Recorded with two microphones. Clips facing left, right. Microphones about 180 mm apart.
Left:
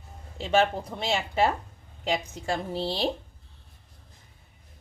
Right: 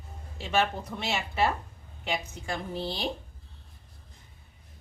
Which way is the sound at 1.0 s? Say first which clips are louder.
Left 3 dB; 30° left (ahead or behind).